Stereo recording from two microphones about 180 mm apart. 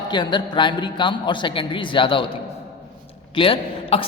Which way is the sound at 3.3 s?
30° left (ahead or behind).